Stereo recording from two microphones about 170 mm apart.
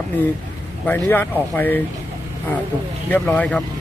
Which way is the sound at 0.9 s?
10° left (ahead or behind).